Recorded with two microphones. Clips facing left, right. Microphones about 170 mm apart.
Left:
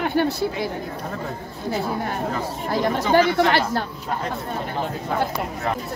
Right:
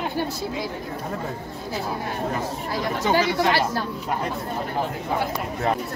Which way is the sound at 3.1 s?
55° left (ahead or behind).